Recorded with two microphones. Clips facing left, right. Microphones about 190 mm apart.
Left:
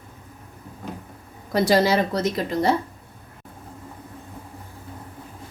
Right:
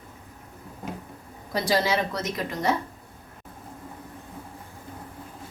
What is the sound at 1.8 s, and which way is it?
Speech, 35° left (ahead or behind).